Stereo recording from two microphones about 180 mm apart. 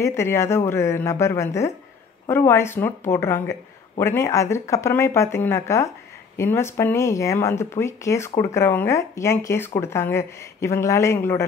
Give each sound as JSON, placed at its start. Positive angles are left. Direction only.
{"t": 0.0, "sound": "speech", "side_deg": 15}